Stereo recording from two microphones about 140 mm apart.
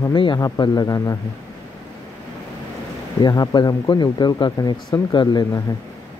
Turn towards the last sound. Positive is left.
turn(degrees=30)  # may be behind; listen again after turning